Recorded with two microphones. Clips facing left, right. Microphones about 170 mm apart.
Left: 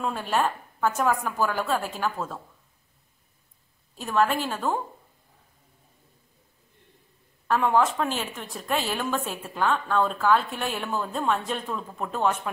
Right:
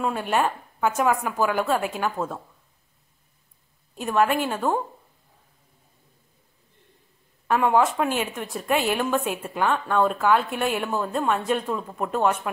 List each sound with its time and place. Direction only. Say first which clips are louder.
0.0 s a woman's voice: right 2 dB; 5° right (ahead or behind)
4.0 s a woman's voice: right 2 dB; 10° right (ahead or behind)
7.4 s a woman's voice: right 2 dB; 10° right (ahead or behind)